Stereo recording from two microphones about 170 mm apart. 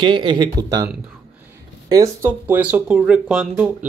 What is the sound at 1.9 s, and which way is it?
Speech, 15° right (ahead or behind).